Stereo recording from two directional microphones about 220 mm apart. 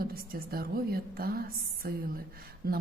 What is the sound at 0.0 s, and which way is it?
A woman's voice, 40° right (ahead or behind).